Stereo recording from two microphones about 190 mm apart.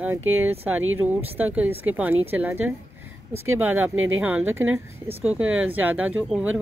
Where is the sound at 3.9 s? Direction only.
90° right.